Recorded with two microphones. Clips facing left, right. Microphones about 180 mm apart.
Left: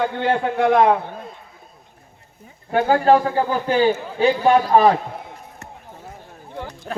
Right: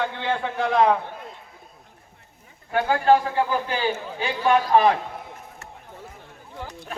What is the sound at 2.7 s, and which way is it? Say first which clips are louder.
A man's voice: left 4 dB; 35° left (ahead or behind).